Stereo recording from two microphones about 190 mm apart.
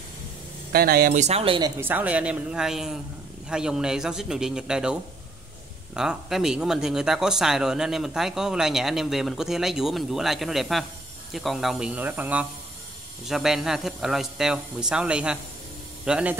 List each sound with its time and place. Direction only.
0.7 s speech: 50° right (ahead or behind); by 1.7 s 30° right (ahead or behind)
1.8 s speech: 10° right (ahead or behind)
5.9 s speech: centre (ahead or behind)